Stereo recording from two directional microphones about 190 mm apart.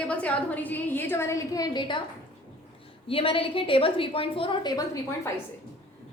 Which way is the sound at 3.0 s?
30° left (ahead or behind).